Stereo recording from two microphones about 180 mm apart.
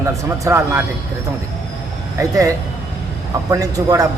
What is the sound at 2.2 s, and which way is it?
Speech, 20° right (ahead or behind).